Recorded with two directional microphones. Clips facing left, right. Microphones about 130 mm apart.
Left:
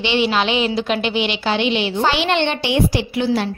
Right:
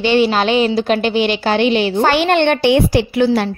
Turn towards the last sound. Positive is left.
turn(degrees=-55)  # may be behind; listen again after turning